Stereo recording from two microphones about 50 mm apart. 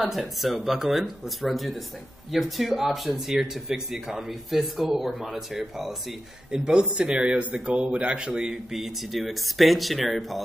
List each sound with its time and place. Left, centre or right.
0.0 s speech: centre
8.7 s speech: centre